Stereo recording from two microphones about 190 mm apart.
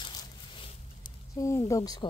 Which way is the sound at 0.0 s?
25° left (ahead or behind).